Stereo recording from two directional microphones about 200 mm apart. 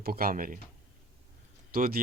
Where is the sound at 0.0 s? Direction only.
45° right (ahead or behind).